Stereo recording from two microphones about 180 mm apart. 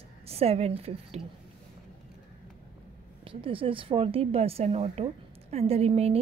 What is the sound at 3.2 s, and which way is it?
A woman's voice, 30° right (ahead or behind).